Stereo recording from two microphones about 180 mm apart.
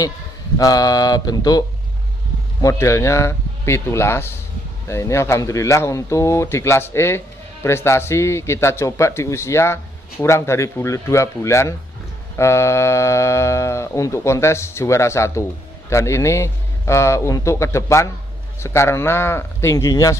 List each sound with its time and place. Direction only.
0.6 s mantra: 20° left (ahead or behind)
2.6 s speech: 15° left (ahead or behind)